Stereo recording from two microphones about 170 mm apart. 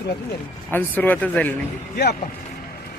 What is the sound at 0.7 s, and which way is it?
Speech, 10° left (ahead or behind).